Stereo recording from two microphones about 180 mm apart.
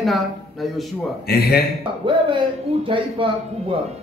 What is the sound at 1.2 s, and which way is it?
Speech, 60° left (ahead or behind).